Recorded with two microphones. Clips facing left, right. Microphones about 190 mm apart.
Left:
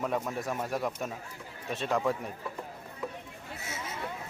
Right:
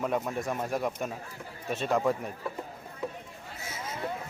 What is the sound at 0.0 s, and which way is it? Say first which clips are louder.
Speech: right 2 dB; centre (ahead or behind).